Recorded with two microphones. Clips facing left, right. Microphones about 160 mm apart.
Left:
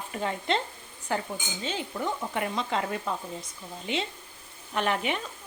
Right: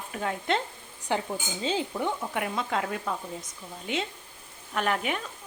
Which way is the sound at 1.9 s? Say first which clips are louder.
Right 1 dB; 10° right (ahead or behind).